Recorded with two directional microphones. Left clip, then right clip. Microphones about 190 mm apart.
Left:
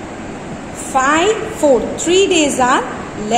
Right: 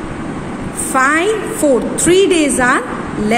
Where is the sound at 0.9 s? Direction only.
20° right (ahead or behind).